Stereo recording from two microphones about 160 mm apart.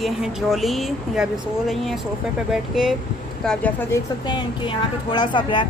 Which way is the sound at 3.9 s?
25° left (ahead or behind).